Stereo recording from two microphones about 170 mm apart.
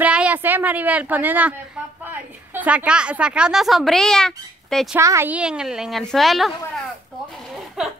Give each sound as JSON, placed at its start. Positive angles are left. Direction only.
{"t": 0.0, "sound": "a woman's voice", "side_deg": -10}
{"t": 4.9, "sound": "a woman's voice", "side_deg": -15}